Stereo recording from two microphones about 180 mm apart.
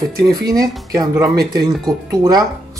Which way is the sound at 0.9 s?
20° right (ahead or behind).